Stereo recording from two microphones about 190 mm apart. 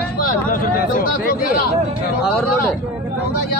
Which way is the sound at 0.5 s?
50° left (ahead or behind).